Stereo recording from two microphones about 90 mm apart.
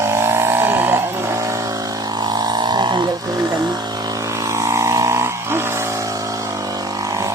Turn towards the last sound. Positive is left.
turn(degrees=-30)  # may be behind; listen again after turning